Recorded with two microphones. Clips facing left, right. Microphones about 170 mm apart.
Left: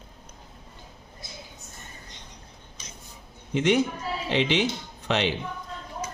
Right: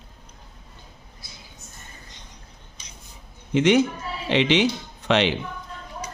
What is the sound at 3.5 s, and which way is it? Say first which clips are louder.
Speech: right 4 dB; 80° right.